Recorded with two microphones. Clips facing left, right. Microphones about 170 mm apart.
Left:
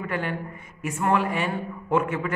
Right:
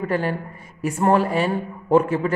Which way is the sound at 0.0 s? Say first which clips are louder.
Right 6 dB; 35° right (ahead or behind).